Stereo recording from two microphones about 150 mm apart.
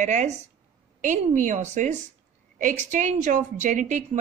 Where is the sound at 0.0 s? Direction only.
55° right (ahead or behind).